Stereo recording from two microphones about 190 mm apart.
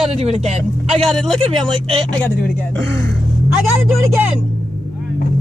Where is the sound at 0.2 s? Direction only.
35° right (ahead or behind).